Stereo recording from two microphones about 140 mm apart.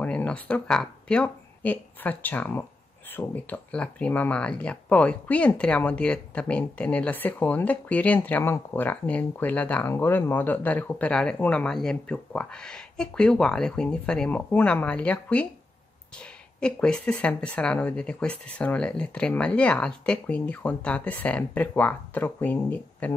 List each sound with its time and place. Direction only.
0.0 s speech: 10° left (ahead or behind)
16.5 s speech: 5° left (ahead or behind)